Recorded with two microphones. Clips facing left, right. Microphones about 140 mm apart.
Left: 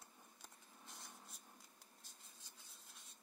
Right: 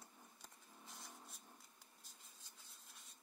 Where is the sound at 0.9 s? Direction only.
Centre (ahead or behind).